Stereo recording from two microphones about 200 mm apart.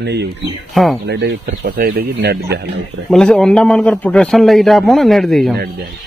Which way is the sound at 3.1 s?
5° left (ahead or behind).